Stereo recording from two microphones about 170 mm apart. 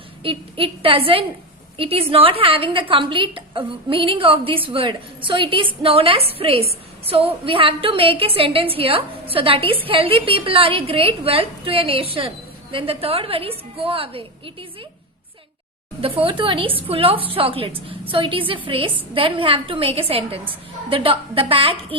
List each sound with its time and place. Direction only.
0.2 s a woman's voice: 30° right (ahead or behind)
16.0 s a woman's voice: 35° right (ahead or behind)